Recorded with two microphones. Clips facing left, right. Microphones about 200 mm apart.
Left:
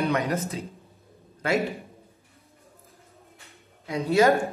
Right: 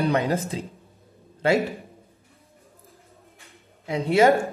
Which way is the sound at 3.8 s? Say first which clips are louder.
Right 2 dB; 30° right (ahead or behind).